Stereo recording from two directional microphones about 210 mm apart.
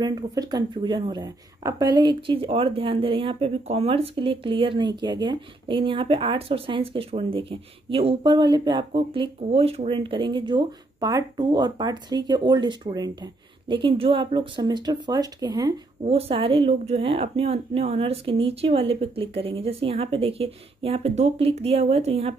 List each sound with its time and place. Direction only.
0.0 s speech: 20° right (ahead or behind)